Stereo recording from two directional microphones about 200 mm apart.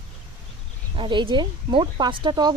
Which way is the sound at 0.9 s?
25° right (ahead or behind).